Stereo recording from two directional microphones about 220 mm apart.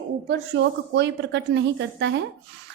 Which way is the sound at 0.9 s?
55° right (ahead or behind).